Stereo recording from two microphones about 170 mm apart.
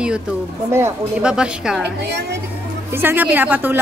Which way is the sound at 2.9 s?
10° right (ahead or behind).